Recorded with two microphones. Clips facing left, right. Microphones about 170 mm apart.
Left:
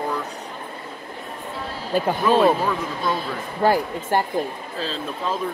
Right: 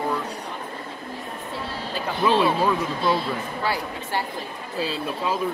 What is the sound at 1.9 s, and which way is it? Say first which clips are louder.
Speech: left 3 dB; 45° left (ahead or behind).